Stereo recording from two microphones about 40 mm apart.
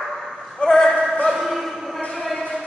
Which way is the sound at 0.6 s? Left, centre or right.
Centre.